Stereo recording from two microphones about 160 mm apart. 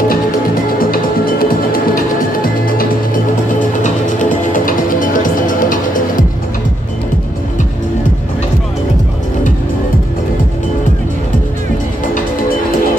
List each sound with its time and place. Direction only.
0.7 s music: 65° left (ahead or behind)
3.8 s music: 55° left (ahead or behind)